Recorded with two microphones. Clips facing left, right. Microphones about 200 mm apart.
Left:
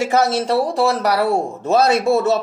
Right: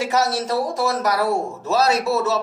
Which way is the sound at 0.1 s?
55° left (ahead or behind).